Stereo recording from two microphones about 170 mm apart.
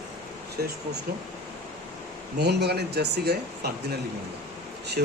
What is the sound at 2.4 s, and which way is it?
Speech, 75° right (ahead or behind).